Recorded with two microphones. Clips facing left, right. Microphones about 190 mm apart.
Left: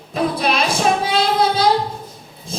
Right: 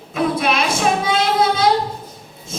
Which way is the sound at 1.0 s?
35° left (ahead or behind).